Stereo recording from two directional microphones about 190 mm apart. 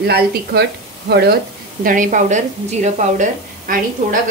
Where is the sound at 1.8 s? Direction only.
45° right (ahead or behind).